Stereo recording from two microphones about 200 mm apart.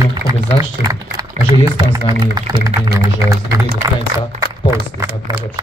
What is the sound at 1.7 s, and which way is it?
Speech, 20° right (ahead or behind).